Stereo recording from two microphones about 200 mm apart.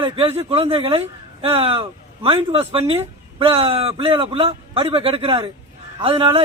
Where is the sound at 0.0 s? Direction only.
30° right (ahead or behind).